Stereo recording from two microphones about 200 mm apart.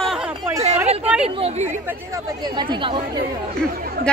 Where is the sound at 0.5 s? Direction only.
30° right (ahead or behind).